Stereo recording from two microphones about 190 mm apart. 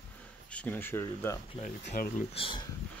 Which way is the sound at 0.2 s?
5° left (ahead or behind).